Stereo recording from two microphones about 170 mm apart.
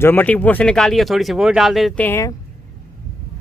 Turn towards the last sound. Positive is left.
turn(degrees=15)  # may be behind; listen again after turning